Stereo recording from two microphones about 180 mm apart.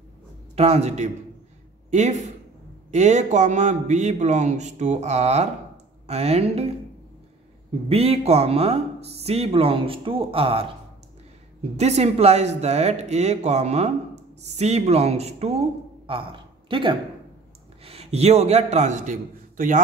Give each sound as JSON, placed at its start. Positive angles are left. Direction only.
{"t": 0.6, "sound": "speech", "side_deg": -35}
{"t": 7.9, "sound": "speech", "side_deg": -35}
{"t": 11.7, "sound": "a man's voice", "side_deg": -40}